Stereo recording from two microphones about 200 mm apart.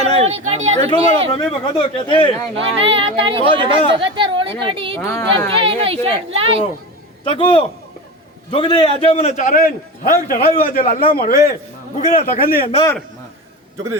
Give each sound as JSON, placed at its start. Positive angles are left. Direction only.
{"t": 0.2, "sound": "speech", "side_deg": -35}
{"t": 1.8, "sound": "speech", "side_deg": 25}
{"t": 2.6, "sound": "speech", "side_deg": -30}
{"t": 4.9, "sound": "speech", "side_deg": 15}
{"t": 5.5, "sound": "speech", "side_deg": -30}
{"t": 7.3, "sound": "a man's voice", "side_deg": 25}